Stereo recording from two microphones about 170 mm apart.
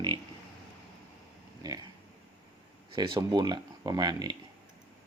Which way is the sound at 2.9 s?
25° right (ahead or behind).